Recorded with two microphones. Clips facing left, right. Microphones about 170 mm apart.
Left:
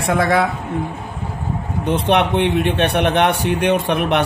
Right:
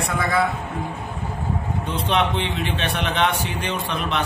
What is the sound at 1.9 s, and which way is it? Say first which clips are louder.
A man's voice: left 7 dB; 65° left (ahead or behind).